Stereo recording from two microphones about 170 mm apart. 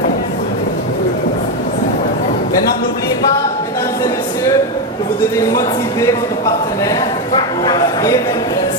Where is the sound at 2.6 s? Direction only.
65° left (ahead or behind).